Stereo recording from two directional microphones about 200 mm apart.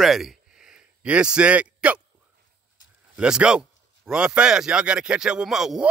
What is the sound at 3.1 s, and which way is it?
Speech, 5° right (ahead or behind).